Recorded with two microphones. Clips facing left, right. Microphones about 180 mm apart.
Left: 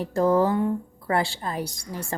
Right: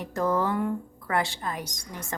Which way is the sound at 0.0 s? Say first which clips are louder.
Left 6 dB; 30° left (ahead or behind).